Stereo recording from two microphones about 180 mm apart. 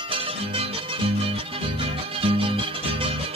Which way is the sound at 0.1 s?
30° right (ahead or behind).